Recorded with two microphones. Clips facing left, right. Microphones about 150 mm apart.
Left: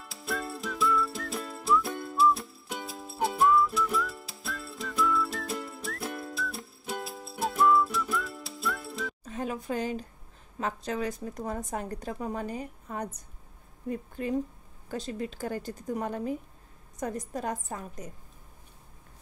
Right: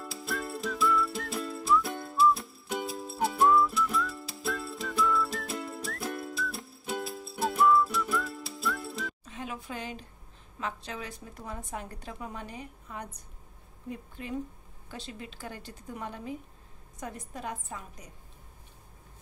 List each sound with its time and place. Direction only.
0.1 s whistling: centre (ahead or behind)
7.1 s music: centre (ahead or behind)
9.2 s a sound: 40° left (ahead or behind)
10.6 s a woman's voice: 40° left (ahead or behind)